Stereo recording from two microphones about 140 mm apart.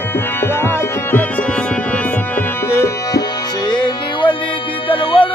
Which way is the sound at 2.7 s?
20° left (ahead or behind).